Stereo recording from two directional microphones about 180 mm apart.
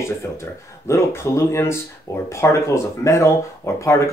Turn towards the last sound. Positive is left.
turn(degrees=15)  # may be behind; listen again after turning